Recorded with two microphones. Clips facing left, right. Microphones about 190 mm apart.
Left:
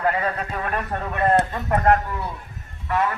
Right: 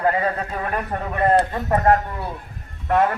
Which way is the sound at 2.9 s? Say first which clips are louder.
Right 4 dB; 50° right (ahead or behind).